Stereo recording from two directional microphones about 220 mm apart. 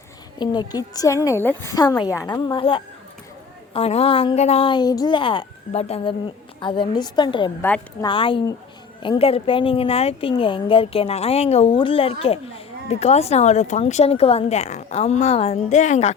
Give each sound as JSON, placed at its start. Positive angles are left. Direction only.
{"t": 0.3, "sound": "a woman's voice", "side_deg": 20}